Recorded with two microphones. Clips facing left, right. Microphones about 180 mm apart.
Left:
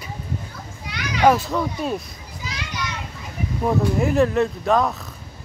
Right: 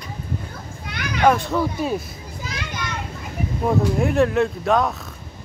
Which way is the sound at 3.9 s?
Centre (ahead or behind).